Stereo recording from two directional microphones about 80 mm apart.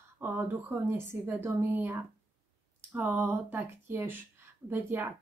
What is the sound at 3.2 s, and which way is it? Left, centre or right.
Speech, right.